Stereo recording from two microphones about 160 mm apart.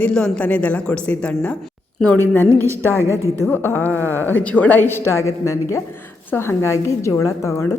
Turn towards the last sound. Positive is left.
turn(degrees=15)  # may be behind; listen again after turning